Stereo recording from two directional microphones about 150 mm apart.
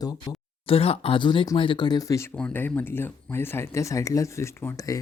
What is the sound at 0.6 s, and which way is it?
A man's voice, 40° left (ahead or behind).